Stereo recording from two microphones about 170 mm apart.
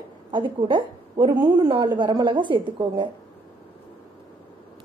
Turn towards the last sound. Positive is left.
turn(degrees=-30)  # may be behind; listen again after turning